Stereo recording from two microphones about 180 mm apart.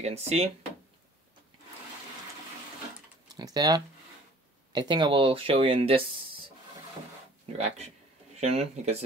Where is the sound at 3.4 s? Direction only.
20° right (ahead or behind).